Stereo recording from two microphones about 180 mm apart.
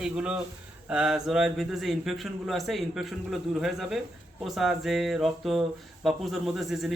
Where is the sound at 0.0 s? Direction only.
5° right (ahead or behind).